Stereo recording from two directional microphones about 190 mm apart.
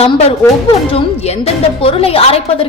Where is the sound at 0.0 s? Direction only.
35° left (ahead or behind).